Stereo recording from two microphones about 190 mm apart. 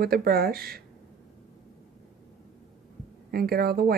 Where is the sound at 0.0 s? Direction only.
55° right (ahead or behind).